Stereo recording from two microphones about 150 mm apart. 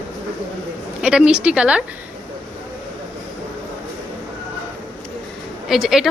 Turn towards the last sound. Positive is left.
turn(degrees=0)  # may be behind; listen again after turning